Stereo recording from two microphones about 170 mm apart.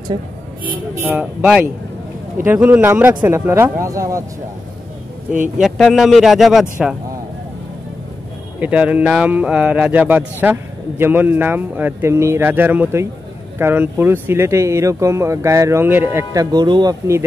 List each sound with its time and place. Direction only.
1.1 s a man's voice: 5° right (ahead or behind)
5.6 s a man's voice: centre (ahead or behind)
8.5 s speech: 5° right (ahead or behind); by 17.2 s 25° right (ahead or behind)